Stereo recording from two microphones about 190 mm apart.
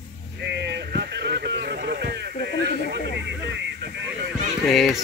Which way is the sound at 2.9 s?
65° right (ahead or behind).